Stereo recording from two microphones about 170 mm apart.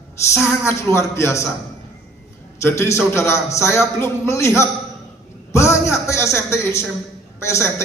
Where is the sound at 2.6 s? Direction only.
15° left (ahead or behind).